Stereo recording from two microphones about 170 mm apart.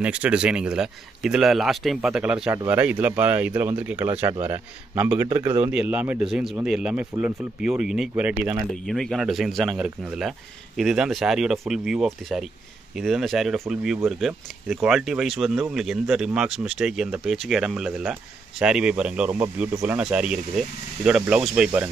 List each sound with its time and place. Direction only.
0.0 s speech: 5° right (ahead or behind)
8.8 s speech: centre (ahead or behind)